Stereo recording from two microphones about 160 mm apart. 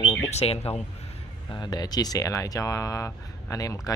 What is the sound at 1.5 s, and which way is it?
Speech, 25° left (ahead or behind).